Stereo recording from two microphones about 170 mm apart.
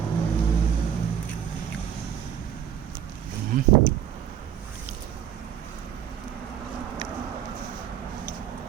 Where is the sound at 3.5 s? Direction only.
55° right (ahead or behind).